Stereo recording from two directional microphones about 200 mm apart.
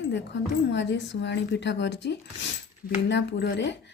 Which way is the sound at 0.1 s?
60° left (ahead or behind).